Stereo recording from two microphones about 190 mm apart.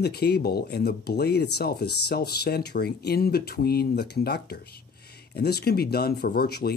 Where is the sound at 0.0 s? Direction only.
60° left (ahead or behind).